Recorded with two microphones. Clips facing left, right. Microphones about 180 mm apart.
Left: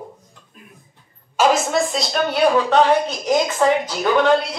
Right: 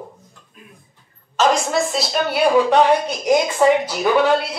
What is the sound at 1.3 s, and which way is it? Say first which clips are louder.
A woman's voice: left 1 dB; 5° left (ahead or behind).